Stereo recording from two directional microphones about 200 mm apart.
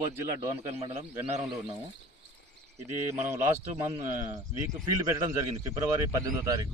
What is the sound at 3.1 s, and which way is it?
A man's voice, 10° right (ahead or behind).